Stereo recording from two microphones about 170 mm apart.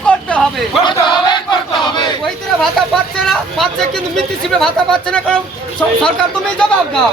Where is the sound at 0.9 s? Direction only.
25° left (ahead or behind).